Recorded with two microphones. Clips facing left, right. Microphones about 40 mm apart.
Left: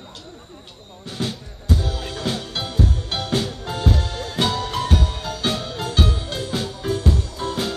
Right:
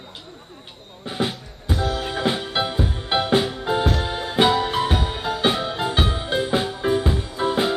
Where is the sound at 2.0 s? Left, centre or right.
Right.